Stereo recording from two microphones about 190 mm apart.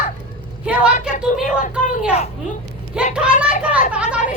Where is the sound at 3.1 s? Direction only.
5° right (ahead or behind).